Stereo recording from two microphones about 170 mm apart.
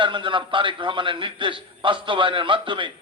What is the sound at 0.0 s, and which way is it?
A man's voice, 30° right (ahead or behind).